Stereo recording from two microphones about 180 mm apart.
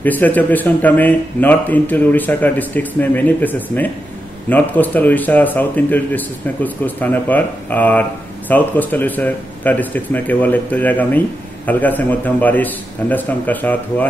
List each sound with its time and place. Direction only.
0.0 s speech: 10° left (ahead or behind)